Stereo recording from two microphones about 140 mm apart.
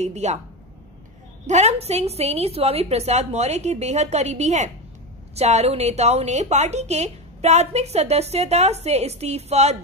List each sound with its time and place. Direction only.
0.0 s a woman's voice: 55° right (ahead or behind)
1.5 s a woman's voice: 50° right (ahead or behind)